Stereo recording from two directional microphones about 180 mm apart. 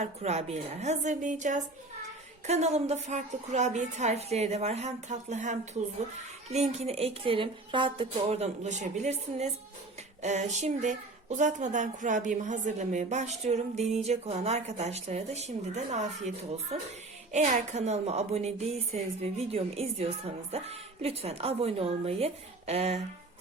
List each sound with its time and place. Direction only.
0.0 s speech: 40° right (ahead or behind)